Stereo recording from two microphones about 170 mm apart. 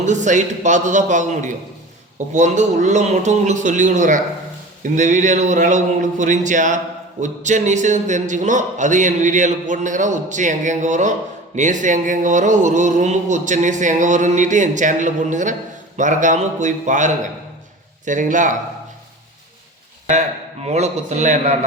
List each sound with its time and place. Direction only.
0.0 s speech: 45° right (ahead or behind)
20.7 s a man's voice: 40° right (ahead or behind)